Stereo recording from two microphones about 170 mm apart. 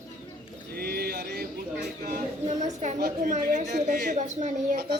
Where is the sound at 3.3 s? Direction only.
45° right (ahead or behind).